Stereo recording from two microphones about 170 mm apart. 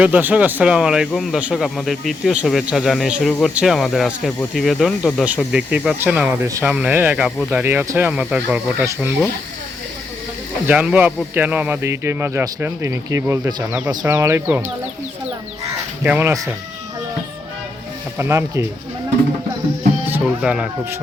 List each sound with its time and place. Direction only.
0.0 s speech: 10° right (ahead or behind)
10.7 s speech: 10° right (ahead or behind)
16.0 s speech: 10° right (ahead or behind)
18.2 s speech: 15° right (ahead or behind)
20.1 s speech: 10° right (ahead or behind)